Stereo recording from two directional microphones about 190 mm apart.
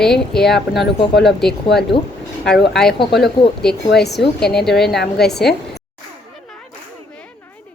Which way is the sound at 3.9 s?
60° left (ahead or behind).